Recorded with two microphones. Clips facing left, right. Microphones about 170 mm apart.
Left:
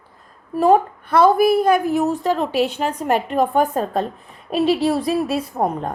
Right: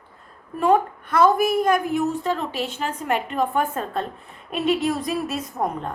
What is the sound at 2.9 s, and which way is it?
A woman's voice, 40° left (ahead or behind).